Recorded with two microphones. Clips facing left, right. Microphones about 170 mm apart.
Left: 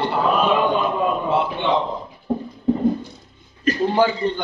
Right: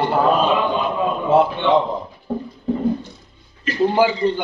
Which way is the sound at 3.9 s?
10° right (ahead or behind).